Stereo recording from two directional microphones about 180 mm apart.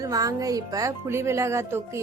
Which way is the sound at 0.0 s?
20° right (ahead or behind).